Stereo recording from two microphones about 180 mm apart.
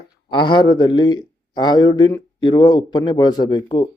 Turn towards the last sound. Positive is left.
turn(degrees=25)  # may be behind; listen again after turning